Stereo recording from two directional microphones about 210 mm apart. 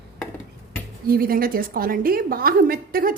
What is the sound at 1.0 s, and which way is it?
A woman's voice, 45° right (ahead or behind).